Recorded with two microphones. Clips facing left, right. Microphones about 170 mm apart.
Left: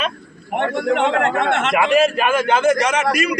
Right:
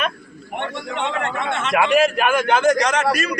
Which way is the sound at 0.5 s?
90° left.